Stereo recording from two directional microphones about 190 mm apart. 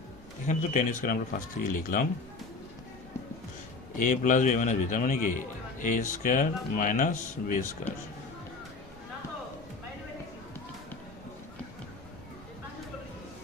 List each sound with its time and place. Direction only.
0.4 s a man's voice: 40° left (ahead or behind)
3.9 s speech: 45° left (ahead or behind)